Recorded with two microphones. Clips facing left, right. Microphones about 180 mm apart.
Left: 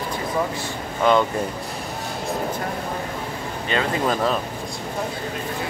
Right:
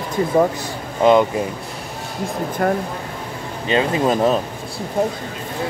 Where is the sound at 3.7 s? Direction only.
20° right (ahead or behind).